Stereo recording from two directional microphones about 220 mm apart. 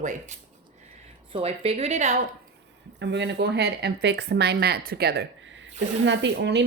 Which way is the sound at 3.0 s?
50° right (ahead or behind).